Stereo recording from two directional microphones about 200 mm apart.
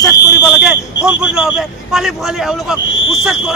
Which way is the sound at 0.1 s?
55° left (ahead or behind).